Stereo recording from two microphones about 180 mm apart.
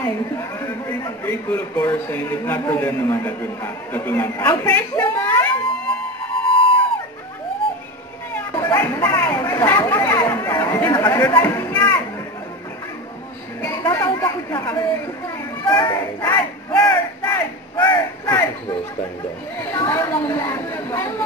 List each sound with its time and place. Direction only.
0.0 s a man's voice: 15° left (ahead or behind)
6.4 s music: 30° left (ahead or behind)
8.5 s speech: 15° left (ahead or behind)
13.6 s speech: 15° left (ahead or behind)
15.9 s a man's voice: 15° left (ahead or behind)
16.8 s a sound: 15° left (ahead or behind)
19.7 s a man's voice: 20° left (ahead or behind)